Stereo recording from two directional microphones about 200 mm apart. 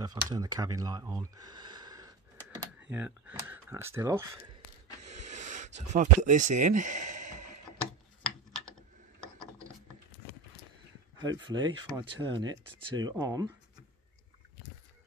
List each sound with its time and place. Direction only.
0.0 s speech: 20° right (ahead or behind)
2.9 s speech: 10° right (ahead or behind)
5.0 s snort: 35° right (ahead or behind)
5.8 s speech: 40° right (ahead or behind)
9.2 s mechanisms: 5° left (ahead or behind)
11.1 s speech: 20° right (ahead or behind)